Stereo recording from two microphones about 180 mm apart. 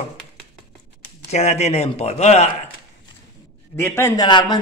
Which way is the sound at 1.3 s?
35° left (ahead or behind).